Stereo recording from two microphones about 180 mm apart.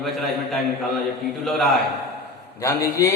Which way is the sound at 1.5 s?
Centre (ahead or behind).